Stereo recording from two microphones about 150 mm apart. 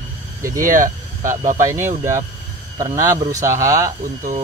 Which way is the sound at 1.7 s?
15° right (ahead or behind).